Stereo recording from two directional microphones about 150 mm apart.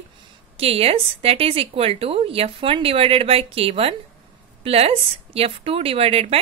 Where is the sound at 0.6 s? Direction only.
40° right (ahead or behind).